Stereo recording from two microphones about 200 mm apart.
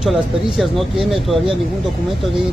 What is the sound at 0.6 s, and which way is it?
Speech, centre (ahead or behind).